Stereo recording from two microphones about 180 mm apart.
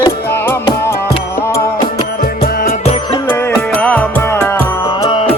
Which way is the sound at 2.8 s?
35° left (ahead or behind).